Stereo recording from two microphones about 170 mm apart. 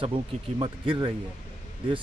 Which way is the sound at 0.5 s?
30° right (ahead or behind).